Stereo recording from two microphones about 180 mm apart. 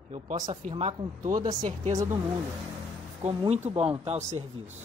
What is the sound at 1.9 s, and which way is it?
Speech, 15° right (ahead or behind).